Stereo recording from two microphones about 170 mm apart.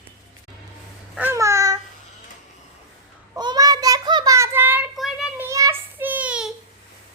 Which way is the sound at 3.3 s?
25° right (ahead or behind).